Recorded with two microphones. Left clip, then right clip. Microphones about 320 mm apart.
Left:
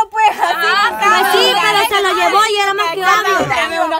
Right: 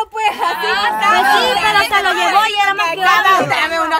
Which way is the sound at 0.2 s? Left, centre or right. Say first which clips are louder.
Left 3 dB; centre.